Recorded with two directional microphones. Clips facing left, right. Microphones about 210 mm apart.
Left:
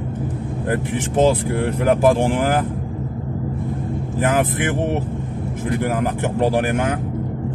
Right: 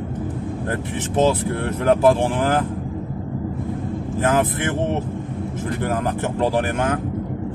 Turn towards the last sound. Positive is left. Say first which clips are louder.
# left 2 dB
turn(degrees=15)  # may be behind; listen again after turning